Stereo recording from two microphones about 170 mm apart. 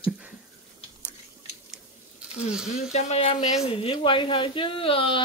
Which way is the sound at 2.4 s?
5° right (ahead or behind).